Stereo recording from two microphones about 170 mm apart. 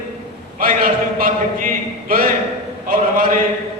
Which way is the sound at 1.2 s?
55° right (ahead or behind).